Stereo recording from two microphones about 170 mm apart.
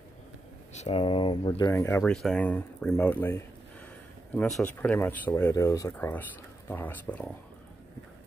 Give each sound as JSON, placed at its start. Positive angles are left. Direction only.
{"t": 0.7, "sound": "speech", "side_deg": 40}
{"t": 1.6, "sound": "speech", "side_deg": 15}